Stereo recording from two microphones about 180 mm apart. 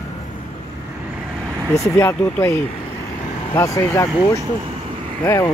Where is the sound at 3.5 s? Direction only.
15° left (ahead or behind).